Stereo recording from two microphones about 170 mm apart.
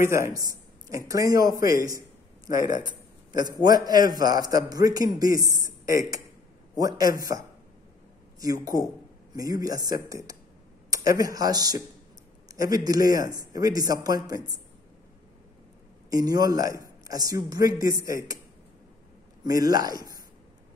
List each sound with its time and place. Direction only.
0.0 s a man's voice: 15° right (ahead or behind)
1.9 s a sound: 20° right (ahead or behind)
3.6 s a man's voice: 20° right (ahead or behind)
16.1 s a man's voice: 20° right (ahead or behind)
19.4 s a man's voice: 20° right (ahead or behind)